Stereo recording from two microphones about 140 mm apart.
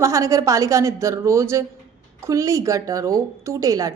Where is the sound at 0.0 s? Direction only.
20° right (ahead or behind).